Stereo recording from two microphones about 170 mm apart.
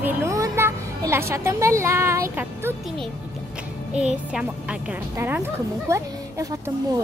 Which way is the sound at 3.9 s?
5° right (ahead or behind).